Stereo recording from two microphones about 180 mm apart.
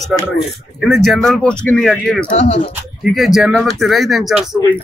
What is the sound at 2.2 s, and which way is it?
Speech, 35° left (ahead or behind).